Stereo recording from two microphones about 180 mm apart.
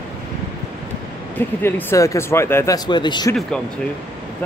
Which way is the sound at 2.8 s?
25° left (ahead or behind).